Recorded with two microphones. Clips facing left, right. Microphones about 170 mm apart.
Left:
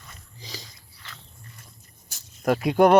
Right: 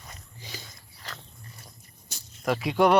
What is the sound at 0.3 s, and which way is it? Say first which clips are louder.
Biting: left 3 dB; 35° left (ahead or behind).